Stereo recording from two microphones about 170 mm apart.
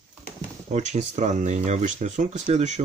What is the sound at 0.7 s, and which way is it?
Speech, 45° right (ahead or behind).